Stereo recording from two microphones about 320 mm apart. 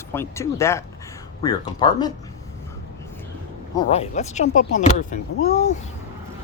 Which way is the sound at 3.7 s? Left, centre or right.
Centre.